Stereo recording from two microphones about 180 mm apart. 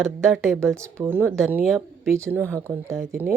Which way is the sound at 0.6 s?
15° right (ahead or behind).